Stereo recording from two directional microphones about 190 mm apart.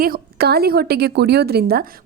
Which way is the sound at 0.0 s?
50° right (ahead or behind).